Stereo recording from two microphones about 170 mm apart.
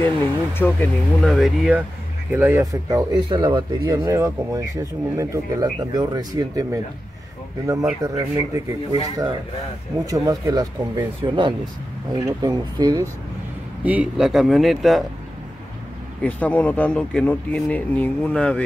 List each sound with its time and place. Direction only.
0.6 s speech: 5° left (ahead or behind); by 6.8 s 20° right (ahead or behind)
8.0 s speech: 20° right (ahead or behind)
13.8 s speech: 5° right (ahead or behind)
16.2 s speech: 10° left (ahead or behind)